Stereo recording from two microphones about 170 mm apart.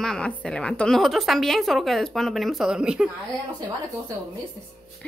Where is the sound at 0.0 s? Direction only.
5° left (ahead or behind).